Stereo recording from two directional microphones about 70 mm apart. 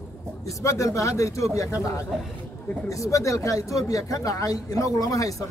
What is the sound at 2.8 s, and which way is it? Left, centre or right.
Speech, left.